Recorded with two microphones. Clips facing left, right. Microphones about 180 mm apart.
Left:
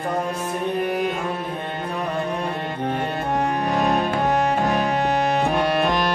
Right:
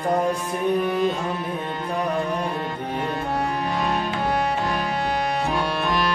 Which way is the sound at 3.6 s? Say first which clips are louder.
Left 4 dB; 45° left (ahead or behind).